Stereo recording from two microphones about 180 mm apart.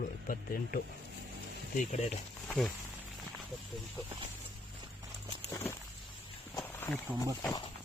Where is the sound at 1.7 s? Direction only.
40° left (ahead or behind).